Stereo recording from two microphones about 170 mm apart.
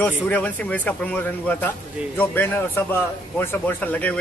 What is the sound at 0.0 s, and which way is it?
A man's voice, 10° left (ahead or behind).